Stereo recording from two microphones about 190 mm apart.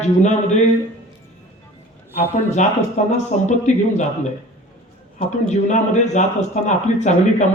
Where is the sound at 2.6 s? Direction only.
40° left (ahead or behind).